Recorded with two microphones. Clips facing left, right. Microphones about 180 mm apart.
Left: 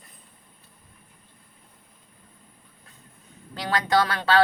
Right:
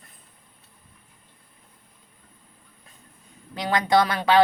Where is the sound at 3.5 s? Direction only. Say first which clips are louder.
Right 2 dB; 15° right (ahead or behind).